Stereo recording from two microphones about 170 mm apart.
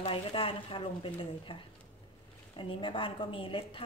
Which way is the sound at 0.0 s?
30° left (ahead or behind).